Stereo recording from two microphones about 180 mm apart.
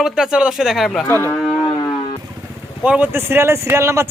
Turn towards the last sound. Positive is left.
turn(degrees=-15)  # may be behind; listen again after turning